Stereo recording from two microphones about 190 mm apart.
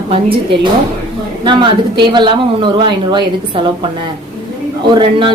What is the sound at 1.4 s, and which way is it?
Speech, 25° right (ahead or behind).